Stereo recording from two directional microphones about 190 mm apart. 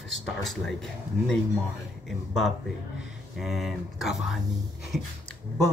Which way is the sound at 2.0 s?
Centre (ahead or behind).